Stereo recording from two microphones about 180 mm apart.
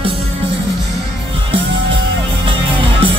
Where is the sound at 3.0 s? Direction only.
30° right (ahead or behind).